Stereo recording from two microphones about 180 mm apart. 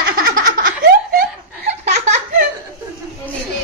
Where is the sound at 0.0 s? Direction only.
55° right (ahead or behind).